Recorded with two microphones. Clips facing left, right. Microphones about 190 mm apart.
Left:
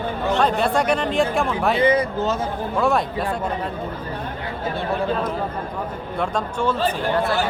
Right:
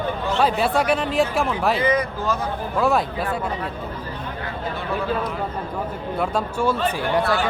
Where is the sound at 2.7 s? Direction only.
Centre (ahead or behind).